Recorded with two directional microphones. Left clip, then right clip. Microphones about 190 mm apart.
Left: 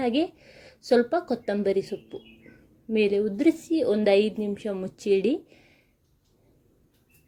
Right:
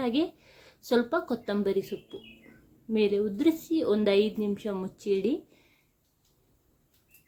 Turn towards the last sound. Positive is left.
turn(degrees=15)  # may be behind; listen again after turning